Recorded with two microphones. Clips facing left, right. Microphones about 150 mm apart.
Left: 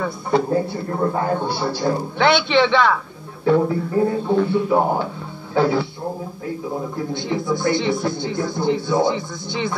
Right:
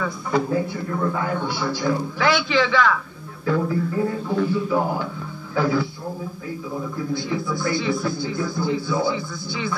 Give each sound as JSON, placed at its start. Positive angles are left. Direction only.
{"t": 0.5, "sound": "a man's voice", "side_deg": 40}
{"t": 2.1, "sound": "a man's voice", "side_deg": 30}
{"t": 7.1, "sound": "a man's voice", "side_deg": 25}